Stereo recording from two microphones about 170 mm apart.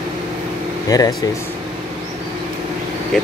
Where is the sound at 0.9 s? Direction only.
20° left (ahead or behind).